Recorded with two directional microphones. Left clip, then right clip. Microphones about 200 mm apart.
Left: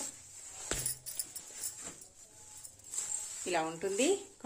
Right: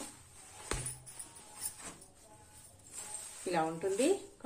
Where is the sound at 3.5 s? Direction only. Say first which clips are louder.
Even; 40° left (ahead or behind).